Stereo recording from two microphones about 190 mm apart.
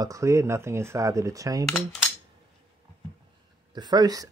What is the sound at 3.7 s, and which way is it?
Speech, 20° right (ahead or behind).